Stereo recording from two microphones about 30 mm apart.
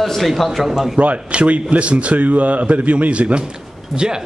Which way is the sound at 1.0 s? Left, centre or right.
Right.